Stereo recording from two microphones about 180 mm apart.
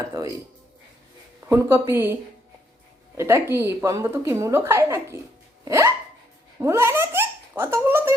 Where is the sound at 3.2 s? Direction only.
15° right (ahead or behind).